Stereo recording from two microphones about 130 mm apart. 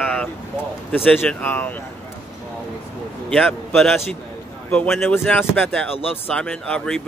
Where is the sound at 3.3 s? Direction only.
5° left (ahead or behind).